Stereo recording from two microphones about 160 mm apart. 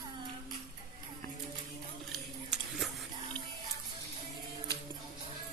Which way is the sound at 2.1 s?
Centre (ahead or behind).